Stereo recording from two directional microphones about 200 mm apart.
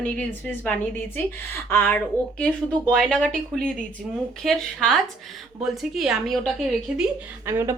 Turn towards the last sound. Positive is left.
turn(degrees=-10)  # may be behind; listen again after turning